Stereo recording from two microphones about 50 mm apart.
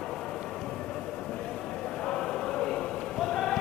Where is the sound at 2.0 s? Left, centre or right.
Centre.